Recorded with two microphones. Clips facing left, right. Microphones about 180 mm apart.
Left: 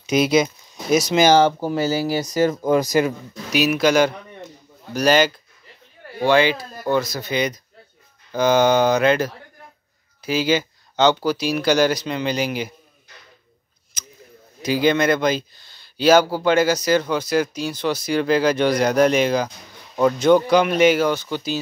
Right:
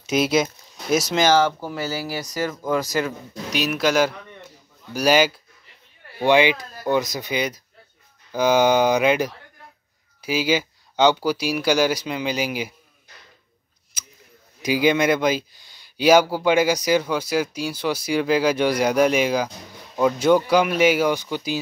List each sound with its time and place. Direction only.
0.0 s speech: centre (ahead or behind)
1.2 s speech: 20° left (ahead or behind)
3.5 s a man's voice: centre (ahead or behind)
14.0 s a sound: 10° right (ahead or behind)
14.6 s speech: 10° right (ahead or behind)